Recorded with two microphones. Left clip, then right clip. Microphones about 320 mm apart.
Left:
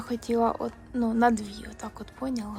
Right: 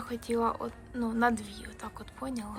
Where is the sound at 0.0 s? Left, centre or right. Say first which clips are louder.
Left 4 dB; centre.